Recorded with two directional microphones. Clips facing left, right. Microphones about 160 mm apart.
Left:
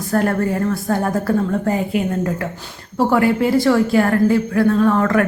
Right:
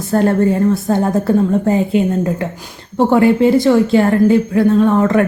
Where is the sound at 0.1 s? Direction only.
25° right (ahead or behind).